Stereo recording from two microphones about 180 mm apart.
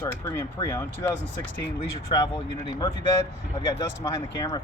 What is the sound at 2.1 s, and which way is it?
Speech, 30° left (ahead or behind).